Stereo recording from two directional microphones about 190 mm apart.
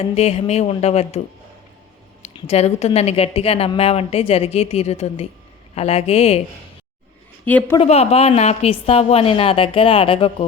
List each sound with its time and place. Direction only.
0.0 s speech: 35° left (ahead or behind)
2.2 s speech: 35° left (ahead or behind)
7.4 s a woman's voice: 10° left (ahead or behind)
7.8 s a woman's voice: 35° left (ahead or behind)